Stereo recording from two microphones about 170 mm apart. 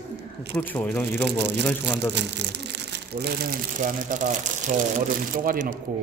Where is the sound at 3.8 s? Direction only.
50° right (ahead or behind).